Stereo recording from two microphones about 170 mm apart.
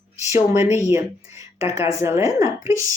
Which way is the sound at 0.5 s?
40° left (ahead or behind).